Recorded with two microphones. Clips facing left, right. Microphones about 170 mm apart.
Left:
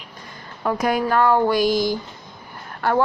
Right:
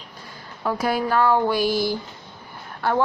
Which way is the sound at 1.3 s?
15° left (ahead or behind).